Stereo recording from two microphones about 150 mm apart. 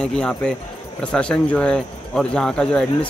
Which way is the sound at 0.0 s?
5° left (ahead or behind).